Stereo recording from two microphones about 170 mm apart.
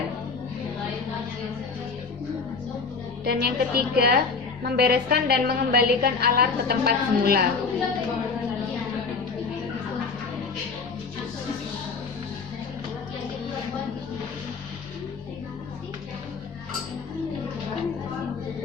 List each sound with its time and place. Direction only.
3.2 s a woman's voice: 65° right (ahead or behind)